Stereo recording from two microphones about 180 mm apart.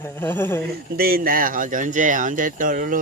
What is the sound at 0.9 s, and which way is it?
Speech, 55° right (ahead or behind).